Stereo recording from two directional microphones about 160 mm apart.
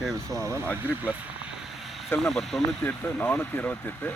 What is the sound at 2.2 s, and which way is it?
Speech, centre (ahead or behind).